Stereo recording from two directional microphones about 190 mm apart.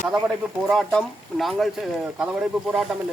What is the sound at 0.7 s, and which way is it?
A man's voice, centre (ahead or behind).